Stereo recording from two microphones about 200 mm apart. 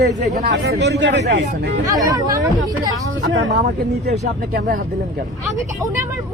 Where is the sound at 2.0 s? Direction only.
15° right (ahead or behind).